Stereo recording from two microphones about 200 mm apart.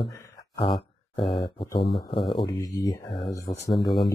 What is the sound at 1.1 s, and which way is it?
Speech, 25° left (ahead or behind).